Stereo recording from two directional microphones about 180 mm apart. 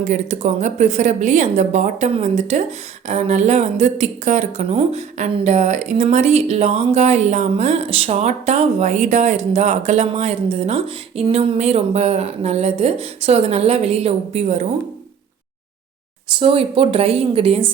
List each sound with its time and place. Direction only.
0.0 s speech: 40° right (ahead or behind)
16.4 s speech: 30° right (ahead or behind)